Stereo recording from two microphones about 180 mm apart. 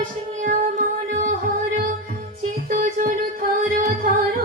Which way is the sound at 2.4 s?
50° right (ahead or behind).